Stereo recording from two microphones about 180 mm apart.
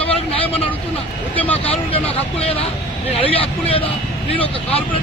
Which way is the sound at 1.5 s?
30° left (ahead or behind).